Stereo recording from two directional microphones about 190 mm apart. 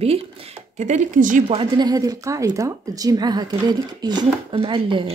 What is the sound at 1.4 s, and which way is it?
A woman's voice, 30° right (ahead or behind).